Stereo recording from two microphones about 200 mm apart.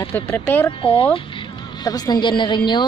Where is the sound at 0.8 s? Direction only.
25° left (ahead or behind).